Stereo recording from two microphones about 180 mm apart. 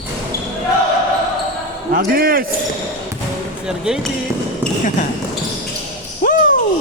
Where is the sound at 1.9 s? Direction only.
55° right (ahead or behind).